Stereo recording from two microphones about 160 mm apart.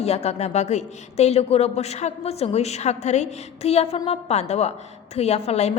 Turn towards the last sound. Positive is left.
turn(degrees=40)  # may be behind; listen again after turning